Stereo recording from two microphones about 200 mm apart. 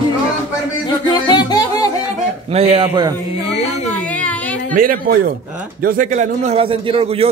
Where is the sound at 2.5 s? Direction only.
30° right (ahead or behind).